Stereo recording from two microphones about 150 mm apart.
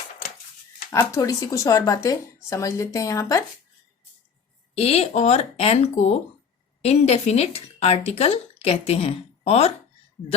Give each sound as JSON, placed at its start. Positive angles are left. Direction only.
{"t": 0.9, "sound": "speech", "side_deg": 20}
{"t": 4.7, "sound": "speech", "side_deg": 40}